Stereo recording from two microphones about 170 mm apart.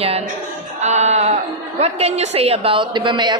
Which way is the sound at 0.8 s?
40° right (ahead or behind).